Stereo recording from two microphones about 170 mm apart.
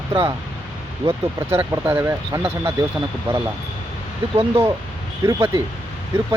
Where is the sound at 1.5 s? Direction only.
15° right (ahead or behind).